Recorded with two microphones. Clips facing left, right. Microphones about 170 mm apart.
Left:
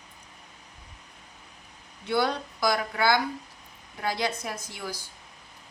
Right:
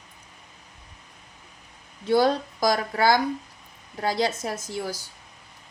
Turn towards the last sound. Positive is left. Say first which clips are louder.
# right 6 dB
turn(degrees=-40)  # may be behind; listen again after turning